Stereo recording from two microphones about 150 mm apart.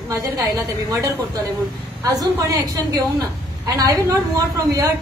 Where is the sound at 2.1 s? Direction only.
25° right (ahead or behind).